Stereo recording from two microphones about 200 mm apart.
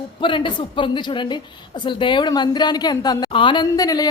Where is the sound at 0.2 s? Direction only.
25° left (ahead or behind).